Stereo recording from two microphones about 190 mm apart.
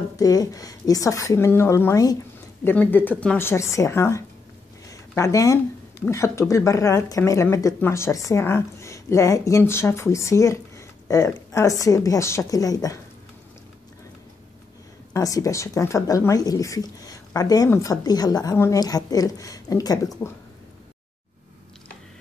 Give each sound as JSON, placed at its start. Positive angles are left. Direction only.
{"t": 0.2, "sound": "speech", "side_deg": 20}
{"t": 15.1, "sound": "speech", "side_deg": 20}